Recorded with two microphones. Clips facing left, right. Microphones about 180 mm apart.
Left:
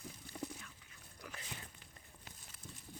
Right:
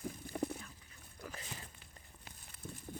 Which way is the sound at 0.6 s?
35° right (ahead or behind).